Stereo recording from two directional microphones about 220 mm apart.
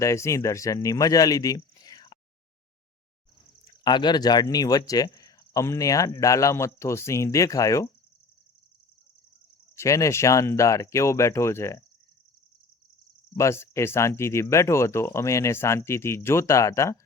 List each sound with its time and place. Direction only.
0.0 s speech: 15° left (ahead or behind)
3.6 s speech: 20° left (ahead or behind)
9.7 s speech: 15° left (ahead or behind)
13.3 s speech: 10° left (ahead or behind)